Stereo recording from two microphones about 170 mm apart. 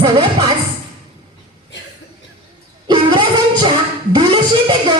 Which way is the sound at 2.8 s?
25° right (ahead or behind).